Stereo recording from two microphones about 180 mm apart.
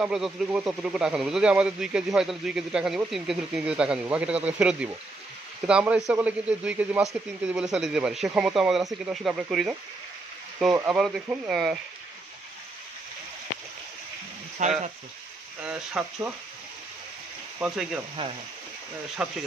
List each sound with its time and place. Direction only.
0.0 s a man's voice: 5° right (ahead or behind)
10.9 s a man's voice: 5° right (ahead or behind)
14.6 s speech: 40° right (ahead or behind)
15.6 s a man's voice: 5° right (ahead or behind)
17.6 s a man's voice: 5° right (ahead or behind)
19.2 s a man's voice: 5° right (ahead or behind)